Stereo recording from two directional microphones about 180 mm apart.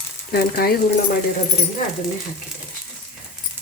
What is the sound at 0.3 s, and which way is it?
Speech, 55° left (ahead or behind).